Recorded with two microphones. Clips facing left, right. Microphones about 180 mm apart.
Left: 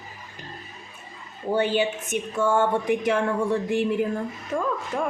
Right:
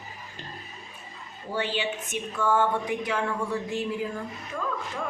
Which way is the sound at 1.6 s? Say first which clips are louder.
Left 5 dB; 45° left (ahead or behind).